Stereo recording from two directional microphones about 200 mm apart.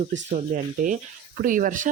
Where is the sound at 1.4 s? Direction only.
40° right (ahead or behind).